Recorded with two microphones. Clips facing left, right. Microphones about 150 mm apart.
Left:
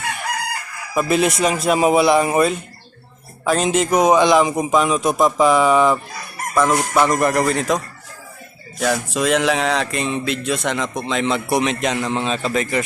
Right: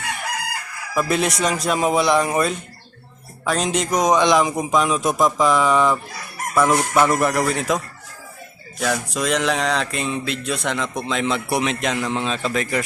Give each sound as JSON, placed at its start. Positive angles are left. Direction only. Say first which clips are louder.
{"t": 0.9, "sound": "a man's voice", "louder": "left 3 dB", "side_deg": 0}
{"t": 6.6, "sound": "chicken", "louder": "even", "side_deg": -10}
{"t": 7.0, "sound": "a man's voice", "louder": "left 2 dB", "side_deg": -5}
{"t": 8.8, "sound": "a man's voice", "louder": "left 3 dB", "side_deg": 0}